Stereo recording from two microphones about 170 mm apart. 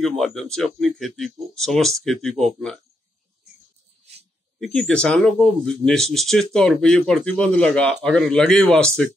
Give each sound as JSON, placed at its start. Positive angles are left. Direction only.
{"t": 0.0, "sound": "speech", "side_deg": 0}
{"t": 4.0, "sound": "a sound", "side_deg": -35}
{"t": 4.6, "sound": "speech", "side_deg": 5}